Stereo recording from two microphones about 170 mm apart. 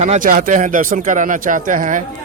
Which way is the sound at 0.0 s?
50° right (ahead or behind).